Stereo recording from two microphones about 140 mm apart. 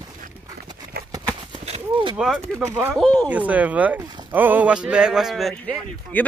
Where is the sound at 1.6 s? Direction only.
45° right (ahead or behind).